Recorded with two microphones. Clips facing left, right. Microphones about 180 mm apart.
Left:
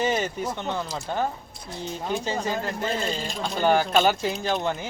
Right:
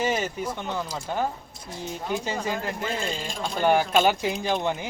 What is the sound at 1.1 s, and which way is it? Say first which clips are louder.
Speech: even; 10° right (ahead or behind).